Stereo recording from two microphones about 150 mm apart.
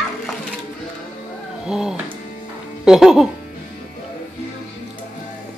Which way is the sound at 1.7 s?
5° right (ahead or behind).